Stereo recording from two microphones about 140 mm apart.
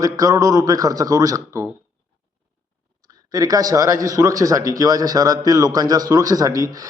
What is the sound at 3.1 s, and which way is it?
Speech, 25° right (ahead or behind).